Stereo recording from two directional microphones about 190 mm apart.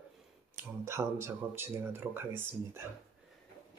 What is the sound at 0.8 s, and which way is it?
Speech, 15° right (ahead or behind).